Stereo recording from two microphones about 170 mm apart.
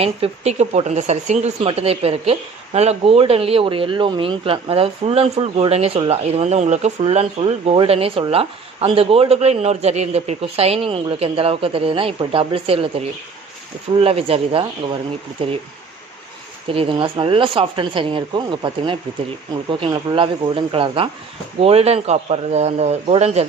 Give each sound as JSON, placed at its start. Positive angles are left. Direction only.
{"t": 0.0, "sound": "speech", "side_deg": -35}
{"t": 16.6, "sound": "speech", "side_deg": -35}